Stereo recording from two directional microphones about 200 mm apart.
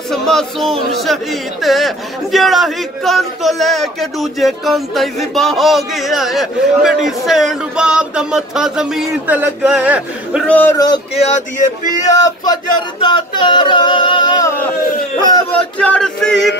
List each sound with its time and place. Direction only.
0.1 s music: centre (ahead or behind)
1.0 s a man's voice: centre (ahead or behind)
10.5 s speech: 10° left (ahead or behind)
11.1 s a sound: 35° left (ahead or behind)
12.1 s speech: 20° left (ahead or behind)
13.0 s a sound: 20° left (ahead or behind)
15.5 s a man's voice: 5° left (ahead or behind)